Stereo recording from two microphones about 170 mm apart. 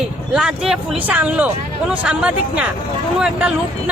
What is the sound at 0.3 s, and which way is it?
Speech, 5° right (ahead or behind).